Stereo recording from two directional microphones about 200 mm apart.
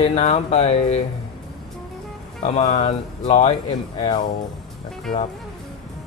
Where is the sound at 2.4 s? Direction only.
35° left (ahead or behind).